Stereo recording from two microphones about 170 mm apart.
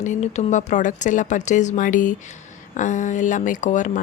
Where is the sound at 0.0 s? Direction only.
45° left (ahead or behind).